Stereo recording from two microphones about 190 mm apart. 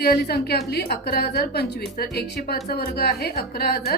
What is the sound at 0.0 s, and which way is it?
A woman's voice, 55° left (ahead or behind).